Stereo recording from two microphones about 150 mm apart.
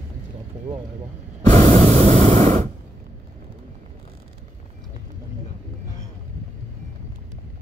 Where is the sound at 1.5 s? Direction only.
50° right (ahead or behind).